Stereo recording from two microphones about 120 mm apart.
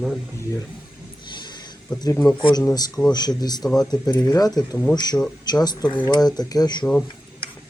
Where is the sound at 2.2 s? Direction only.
35° left (ahead or behind).